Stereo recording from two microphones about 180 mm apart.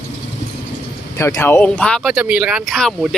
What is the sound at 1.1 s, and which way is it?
Speech, 15° left (ahead or behind).